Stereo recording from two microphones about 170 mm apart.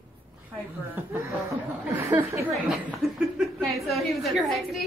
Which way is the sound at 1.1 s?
15° right (ahead or behind).